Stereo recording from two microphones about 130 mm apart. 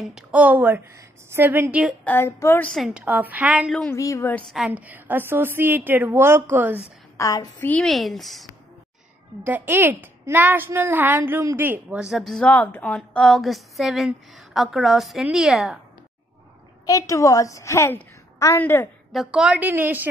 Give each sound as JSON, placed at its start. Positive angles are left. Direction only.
{"t": 0.0, "sound": "a woman's voice", "side_deg": -10}
{"t": 2.0, "sound": "speech", "side_deg": 15}
{"t": 2.7, "sound": "a woman's voice", "side_deg": -5}
{"t": 3.9, "sound": "speech", "side_deg": 25}
{"t": 4.4, "sound": "a woman's voice", "side_deg": 0}
{"t": 4.6, "sound": "a woman's voice", "side_deg": -10}
{"t": 7.2, "sound": "a woman's voice", "side_deg": 25}
{"t": 7.8, "sound": "a woman's voice", "side_deg": 0}
{"t": 9.4, "sound": "a woman's voice", "side_deg": -15}
{"t": 16.8, "sound": "a woman's voice", "side_deg": 25}
{"t": 19.1, "sound": "a woman's voice", "side_deg": -5}